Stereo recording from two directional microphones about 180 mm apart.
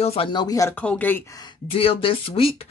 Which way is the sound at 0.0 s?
30° left (ahead or behind).